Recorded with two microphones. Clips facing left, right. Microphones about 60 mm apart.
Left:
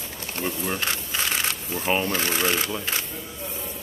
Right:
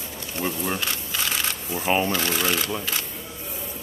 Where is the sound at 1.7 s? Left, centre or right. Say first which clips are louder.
Right 2 dB; centre.